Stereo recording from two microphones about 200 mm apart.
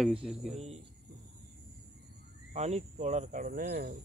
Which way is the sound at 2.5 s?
35° right (ahead or behind).